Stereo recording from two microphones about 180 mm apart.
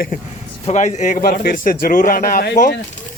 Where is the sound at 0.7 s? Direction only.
40° left (ahead or behind).